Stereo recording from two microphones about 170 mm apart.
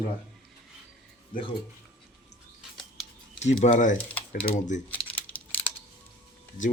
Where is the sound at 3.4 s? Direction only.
45° left (ahead or behind).